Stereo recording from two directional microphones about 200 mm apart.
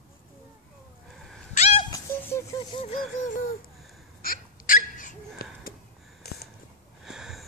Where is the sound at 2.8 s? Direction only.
35° left (ahead or behind).